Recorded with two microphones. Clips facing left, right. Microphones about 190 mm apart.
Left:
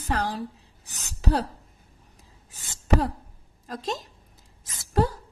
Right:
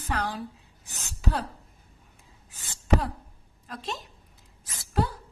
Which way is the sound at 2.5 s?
40° left (ahead or behind).